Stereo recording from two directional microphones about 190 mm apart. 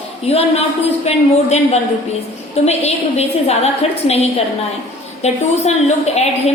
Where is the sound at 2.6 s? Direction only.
35° left (ahead or behind).